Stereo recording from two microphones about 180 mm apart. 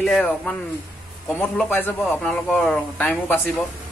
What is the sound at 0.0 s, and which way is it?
Speech, 5° left (ahead or behind).